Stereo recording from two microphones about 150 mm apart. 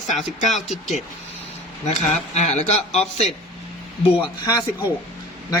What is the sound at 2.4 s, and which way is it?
Speech, 50° left (ahead or behind).